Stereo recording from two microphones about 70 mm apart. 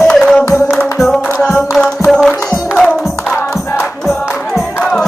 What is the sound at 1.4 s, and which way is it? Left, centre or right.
Music, centre.